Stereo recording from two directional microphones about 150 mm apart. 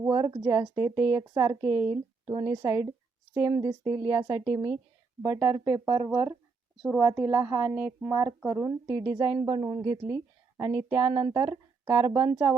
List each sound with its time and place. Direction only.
0.1 s a woman's voice: 25° right (ahead or behind)
11.0 s a woman's voice: 30° right (ahead or behind)